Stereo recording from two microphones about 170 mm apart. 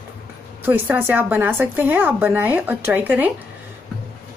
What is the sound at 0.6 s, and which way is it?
Speech, 10° right (ahead or behind).